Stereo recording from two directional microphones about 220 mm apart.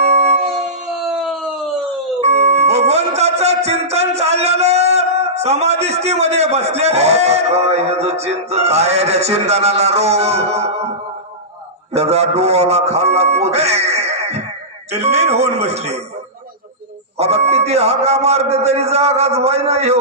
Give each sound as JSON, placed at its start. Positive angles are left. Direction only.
{"t": 1.1, "sound": "a sound", "side_deg": 0}
{"t": 2.2, "sound": "music", "side_deg": -30}
{"t": 11.9, "sound": "a man's voice", "side_deg": -30}
{"t": 14.9, "sound": "music", "side_deg": -30}
{"t": 17.2, "sound": "music", "side_deg": -30}